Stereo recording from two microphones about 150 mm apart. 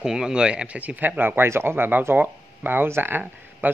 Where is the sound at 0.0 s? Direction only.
5° right (ahead or behind).